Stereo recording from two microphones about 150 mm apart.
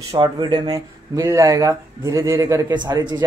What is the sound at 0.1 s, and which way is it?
A woman's voice, 30° right (ahead or behind).